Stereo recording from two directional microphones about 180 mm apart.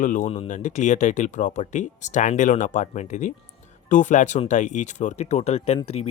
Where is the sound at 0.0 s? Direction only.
45° left (ahead or behind).